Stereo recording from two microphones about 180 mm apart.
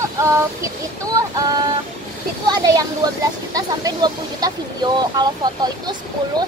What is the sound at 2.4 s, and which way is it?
Speech, 20° right (ahead or behind).